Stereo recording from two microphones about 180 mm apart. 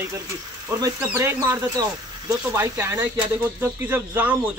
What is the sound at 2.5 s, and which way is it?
Speech, 15° right (ahead or behind).